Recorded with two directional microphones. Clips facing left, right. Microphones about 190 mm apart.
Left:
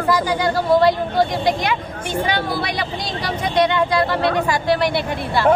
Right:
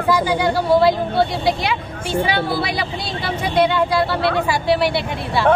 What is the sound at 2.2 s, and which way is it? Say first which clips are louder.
Speech: even; 5° right (ahead or behind).